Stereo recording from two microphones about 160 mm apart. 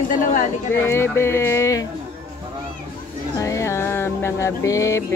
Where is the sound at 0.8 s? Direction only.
15° left (ahead or behind).